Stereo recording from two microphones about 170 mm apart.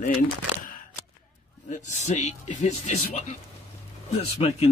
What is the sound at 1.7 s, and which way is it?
Speech, 45° left (ahead or behind).